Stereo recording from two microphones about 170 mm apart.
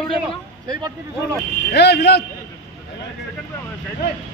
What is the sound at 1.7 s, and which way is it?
Speech, 80° left.